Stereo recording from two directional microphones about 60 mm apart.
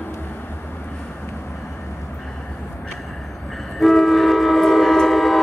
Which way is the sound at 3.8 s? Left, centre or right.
Centre.